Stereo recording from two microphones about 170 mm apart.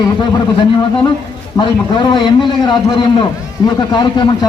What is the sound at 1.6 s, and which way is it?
A man's voice, 25° left (ahead or behind).